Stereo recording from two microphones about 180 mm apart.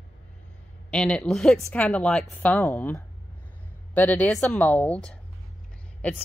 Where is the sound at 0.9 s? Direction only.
5° left (ahead or behind).